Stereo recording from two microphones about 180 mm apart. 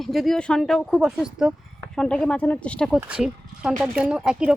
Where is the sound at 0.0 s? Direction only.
Centre (ahead or behind).